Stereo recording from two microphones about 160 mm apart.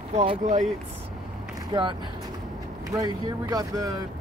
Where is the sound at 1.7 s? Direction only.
30° right (ahead or behind).